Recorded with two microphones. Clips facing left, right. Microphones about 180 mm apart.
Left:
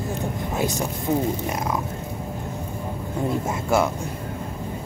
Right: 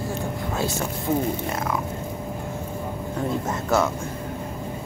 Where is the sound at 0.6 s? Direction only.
15° left (ahead or behind).